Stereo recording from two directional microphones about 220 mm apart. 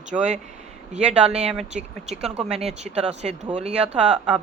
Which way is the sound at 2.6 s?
30° right (ahead or behind).